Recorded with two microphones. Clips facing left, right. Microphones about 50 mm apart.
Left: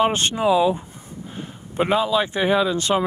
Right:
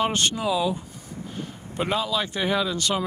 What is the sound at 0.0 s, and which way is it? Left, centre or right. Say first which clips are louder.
Speech: left 5 dB; left.